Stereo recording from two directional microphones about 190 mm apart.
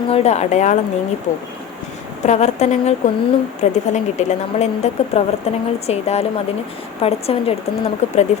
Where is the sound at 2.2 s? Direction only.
35° left (ahead or behind).